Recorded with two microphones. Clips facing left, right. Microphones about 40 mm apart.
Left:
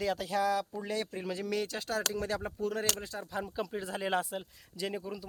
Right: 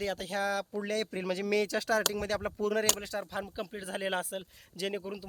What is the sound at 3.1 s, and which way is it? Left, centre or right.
Speech, right.